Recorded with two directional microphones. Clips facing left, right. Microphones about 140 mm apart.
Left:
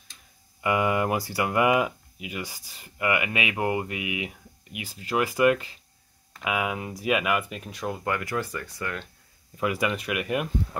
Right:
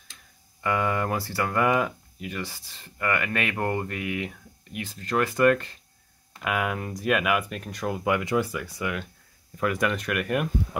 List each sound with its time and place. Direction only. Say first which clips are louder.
0.6 s speech: left 2 dB; 15° left (ahead or behind)
8.1 s speech: right 6 dB; 20° right (ahead or behind)
9.6 s speech: right 1 dB; 5° left (ahead or behind)